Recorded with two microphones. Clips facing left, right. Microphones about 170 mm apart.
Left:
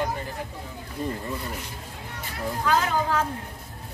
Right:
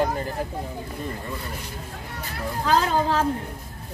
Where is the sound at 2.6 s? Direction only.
30° right (ahead or behind).